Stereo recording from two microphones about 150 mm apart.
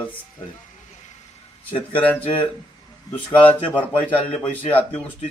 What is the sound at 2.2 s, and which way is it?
Speech, 40° left (ahead or behind).